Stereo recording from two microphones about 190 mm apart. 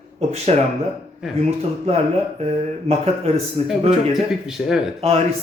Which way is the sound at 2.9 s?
35° right (ahead or behind).